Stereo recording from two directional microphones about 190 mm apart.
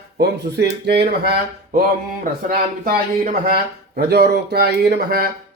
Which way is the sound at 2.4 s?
50° right (ahead or behind).